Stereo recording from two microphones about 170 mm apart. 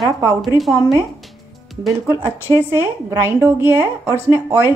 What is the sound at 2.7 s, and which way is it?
A woman's voice, 15° right (ahead or behind).